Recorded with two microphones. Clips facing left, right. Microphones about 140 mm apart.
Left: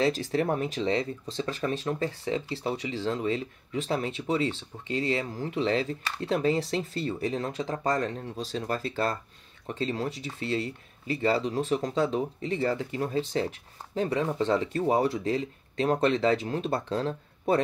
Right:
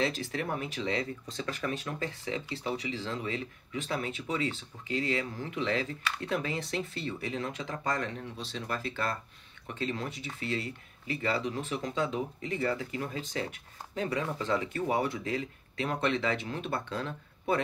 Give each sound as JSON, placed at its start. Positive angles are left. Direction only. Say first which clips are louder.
{"t": 0.0, "sound": "speech", "louder": "left 6 dB", "side_deg": 35}